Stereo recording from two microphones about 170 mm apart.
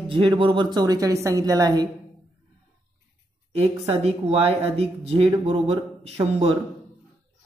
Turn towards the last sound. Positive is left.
turn(degrees=-35)  # may be behind; listen again after turning